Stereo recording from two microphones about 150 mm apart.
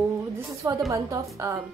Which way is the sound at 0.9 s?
20° right (ahead or behind).